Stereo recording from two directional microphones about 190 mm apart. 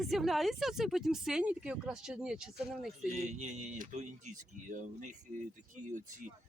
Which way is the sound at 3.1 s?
35° right (ahead or behind).